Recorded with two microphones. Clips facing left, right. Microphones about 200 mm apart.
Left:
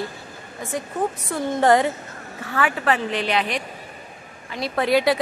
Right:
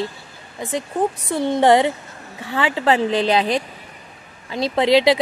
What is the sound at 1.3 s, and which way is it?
A woman's voice, 20° right (ahead or behind).